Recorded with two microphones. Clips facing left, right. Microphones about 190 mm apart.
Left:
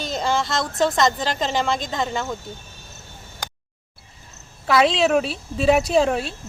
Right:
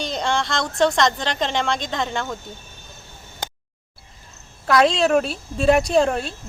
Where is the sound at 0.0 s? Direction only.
5° left (ahead or behind).